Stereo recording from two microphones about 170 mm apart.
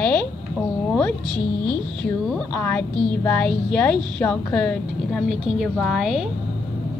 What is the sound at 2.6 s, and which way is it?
A woman's voice, 10° left (ahead or behind).